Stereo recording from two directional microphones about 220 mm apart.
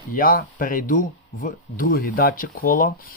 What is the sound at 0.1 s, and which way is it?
Speech, 40° left (ahead or behind).